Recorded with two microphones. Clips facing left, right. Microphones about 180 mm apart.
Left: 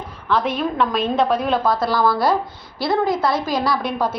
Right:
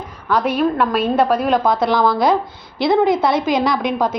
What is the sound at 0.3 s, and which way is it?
A woman's voice, 10° right (ahead or behind).